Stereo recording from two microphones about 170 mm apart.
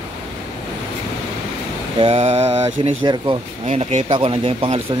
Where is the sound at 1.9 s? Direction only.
35° right (ahead or behind).